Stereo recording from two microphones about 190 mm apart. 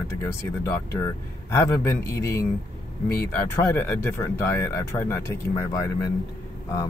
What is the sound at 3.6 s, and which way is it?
Speech, 15° left (ahead or behind).